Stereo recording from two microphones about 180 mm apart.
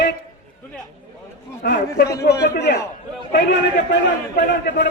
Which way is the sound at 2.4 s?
70° left (ahead or behind).